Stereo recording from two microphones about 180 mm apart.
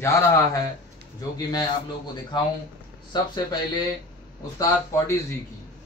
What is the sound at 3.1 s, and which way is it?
Speech, 25° left (ahead or behind).